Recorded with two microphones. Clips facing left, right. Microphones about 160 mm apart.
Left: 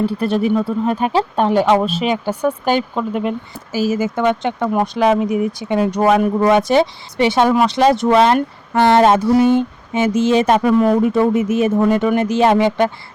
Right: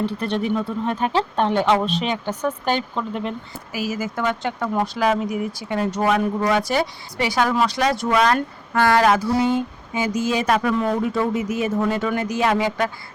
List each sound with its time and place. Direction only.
0.0 s speech: 10° left (ahead or behind)
3.7 s speech: 25° left (ahead or behind)